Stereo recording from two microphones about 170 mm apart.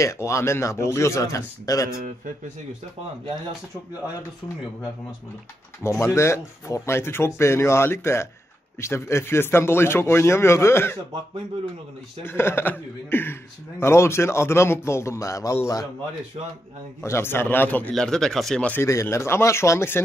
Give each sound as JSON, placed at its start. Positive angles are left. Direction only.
{"t": 0.0, "sound": "speech", "side_deg": 15}
{"t": 5.8, "sound": "speech", "side_deg": 10}
{"t": 12.3, "sound": "speech", "side_deg": 15}
{"t": 16.4, "sound": "a man's voice", "side_deg": -35}
{"t": 17.0, "sound": "speech", "side_deg": 15}